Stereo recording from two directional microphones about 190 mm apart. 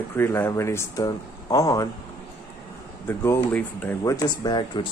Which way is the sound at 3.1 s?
15° left (ahead or behind).